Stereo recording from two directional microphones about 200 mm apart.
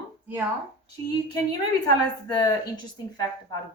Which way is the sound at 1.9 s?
20° left (ahead or behind).